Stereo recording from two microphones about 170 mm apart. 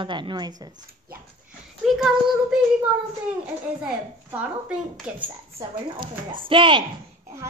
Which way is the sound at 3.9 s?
5° right (ahead or behind).